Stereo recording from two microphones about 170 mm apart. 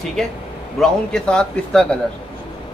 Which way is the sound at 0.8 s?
5° left (ahead or behind).